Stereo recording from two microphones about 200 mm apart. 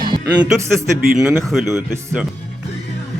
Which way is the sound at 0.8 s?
5° right (ahead or behind).